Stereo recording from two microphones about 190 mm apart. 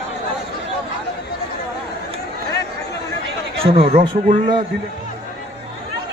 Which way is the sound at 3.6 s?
30° right (ahead or behind).